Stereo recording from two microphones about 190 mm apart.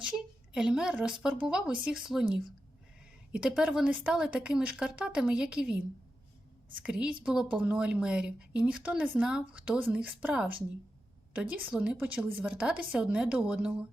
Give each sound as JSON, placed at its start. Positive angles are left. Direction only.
{"t": 0.0, "sound": "a woman's voice", "side_deg": -5}
{"t": 3.3, "sound": "a woman's voice", "side_deg": -5}
{"t": 6.8, "sound": "a woman's voice", "side_deg": -5}